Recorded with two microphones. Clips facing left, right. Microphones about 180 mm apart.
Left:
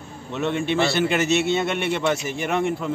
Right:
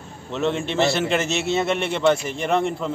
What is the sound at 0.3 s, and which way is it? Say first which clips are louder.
Speech: even; centre (ahead or behind).